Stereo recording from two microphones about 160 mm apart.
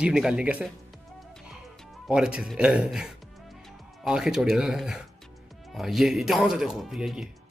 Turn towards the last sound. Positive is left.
turn(degrees=0)  # may be behind; listen again after turning